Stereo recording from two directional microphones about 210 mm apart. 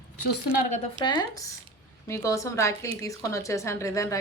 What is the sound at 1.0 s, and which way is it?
Speech, 20° left (ahead or behind).